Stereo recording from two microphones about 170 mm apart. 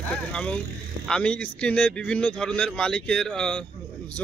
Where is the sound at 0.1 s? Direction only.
5° left (ahead or behind).